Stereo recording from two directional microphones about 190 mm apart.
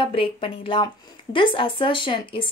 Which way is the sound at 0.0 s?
30° left (ahead or behind).